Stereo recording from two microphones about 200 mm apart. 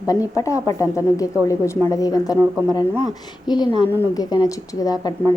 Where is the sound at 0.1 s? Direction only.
15° left (ahead or behind).